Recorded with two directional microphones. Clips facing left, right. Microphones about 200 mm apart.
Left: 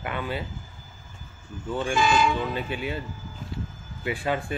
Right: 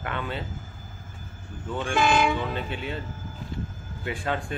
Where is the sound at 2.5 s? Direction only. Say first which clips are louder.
Left 2 dB; 10° left (ahead or behind).